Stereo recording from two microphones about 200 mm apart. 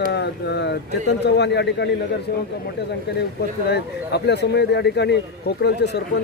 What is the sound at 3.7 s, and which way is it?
Speech, 55° left (ahead or behind).